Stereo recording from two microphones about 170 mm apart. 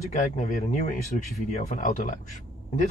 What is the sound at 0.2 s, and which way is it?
Speech, 45° left (ahead or behind).